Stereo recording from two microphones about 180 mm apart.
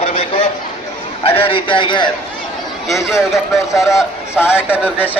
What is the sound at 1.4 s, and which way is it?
Speech, 30° left (ahead or behind).